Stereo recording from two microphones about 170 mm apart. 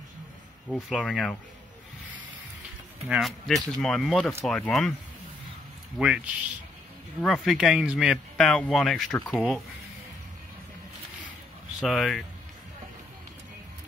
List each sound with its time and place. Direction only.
0.7 s speech: centre (ahead or behind)
3.1 s speech: centre (ahead or behind)
5.9 s speech: 5° right (ahead or behind)
11.8 s speech: centre (ahead or behind)